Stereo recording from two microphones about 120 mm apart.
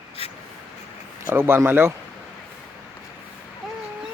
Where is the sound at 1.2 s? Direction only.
20° right (ahead or behind).